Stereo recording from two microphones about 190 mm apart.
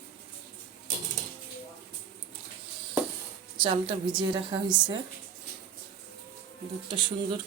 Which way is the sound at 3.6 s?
25° right (ahead or behind).